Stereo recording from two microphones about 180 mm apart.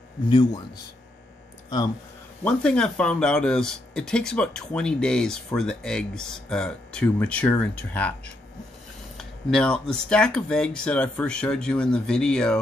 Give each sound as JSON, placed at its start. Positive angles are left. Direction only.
{"t": 0.3, "sound": "a man's voice", "side_deg": 25}
{"t": 2.4, "sound": "speech", "side_deg": 5}
{"t": 9.1, "sound": "speech", "side_deg": 5}